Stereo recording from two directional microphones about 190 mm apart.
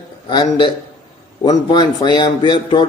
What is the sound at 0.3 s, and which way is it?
A man's voice, 25° left (ahead or behind).